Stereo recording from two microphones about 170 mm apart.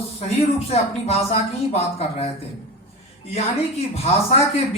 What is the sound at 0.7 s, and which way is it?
Speech, 40° left (ahead or behind).